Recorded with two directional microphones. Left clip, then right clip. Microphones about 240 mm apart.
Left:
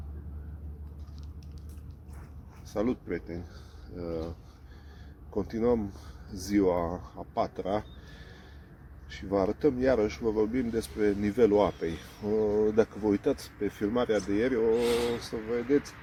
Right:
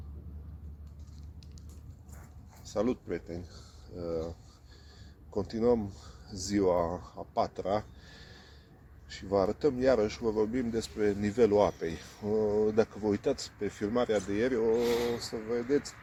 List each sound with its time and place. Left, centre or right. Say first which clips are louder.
2.6 s speech: left 1 dB; right
5.3 s speech: even; centre
14.8 s speech: left 2 dB; centre
15.1 s speech: left 2 dB; right